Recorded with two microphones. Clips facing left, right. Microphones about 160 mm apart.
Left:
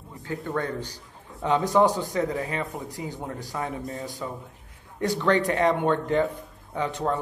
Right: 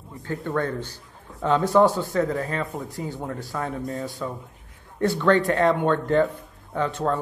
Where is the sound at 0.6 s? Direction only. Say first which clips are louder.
Right 4 dB; 15° left (ahead or behind).